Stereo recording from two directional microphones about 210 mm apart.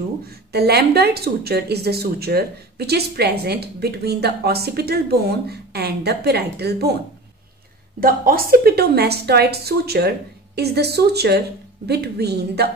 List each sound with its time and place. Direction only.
0.5 s speech: 50° right (ahead or behind)
8.0 s speech: 45° right (ahead or behind)